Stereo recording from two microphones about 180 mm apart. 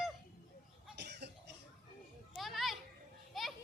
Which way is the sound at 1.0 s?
65° right (ahead or behind).